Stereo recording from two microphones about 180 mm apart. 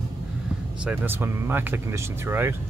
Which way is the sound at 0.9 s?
10° right (ahead or behind).